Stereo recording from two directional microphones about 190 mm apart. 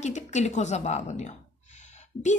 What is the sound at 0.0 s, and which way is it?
A woman's voice, 40° left (ahead or behind).